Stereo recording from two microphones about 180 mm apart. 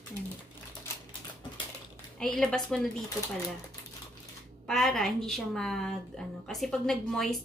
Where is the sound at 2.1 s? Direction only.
5° left (ahead or behind).